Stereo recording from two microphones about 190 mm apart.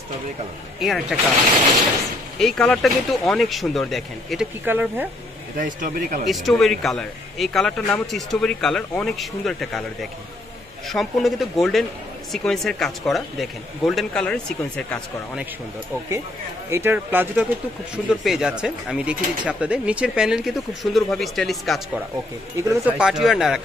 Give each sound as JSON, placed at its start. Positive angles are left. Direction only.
{"t": 0.7, "sound": "speech", "side_deg": 0}
{"t": 2.3, "sound": "speech", "side_deg": 0}
{"t": 4.6, "sound": "speech", "side_deg": -10}
{"t": 5.6, "sound": "speech", "side_deg": -45}
{"t": 6.2, "sound": "speech", "side_deg": 0}
{"t": 10.9, "sound": "speech", "side_deg": 0}
{"t": 16.7, "sound": "speech", "side_deg": -10}
{"t": 22.6, "sound": "speech", "side_deg": -15}
{"t": 22.9, "sound": "speech", "side_deg": -5}